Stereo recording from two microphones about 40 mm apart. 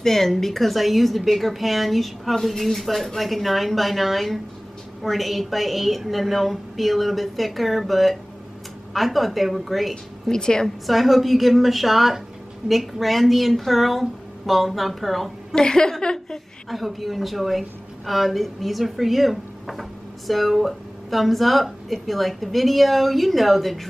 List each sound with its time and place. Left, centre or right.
0.0 s a woman's voice: centre
10.3 s a woman's voice: centre
10.9 s a woman's voice: centre
15.5 s speech: centre
16.6 s a woman's voice: centre